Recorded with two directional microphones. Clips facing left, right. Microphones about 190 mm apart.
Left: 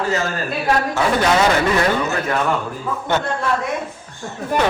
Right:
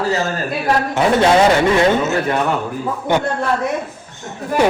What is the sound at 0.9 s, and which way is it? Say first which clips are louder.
A man's voice: right 6 dB; 25° right (ahead or behind).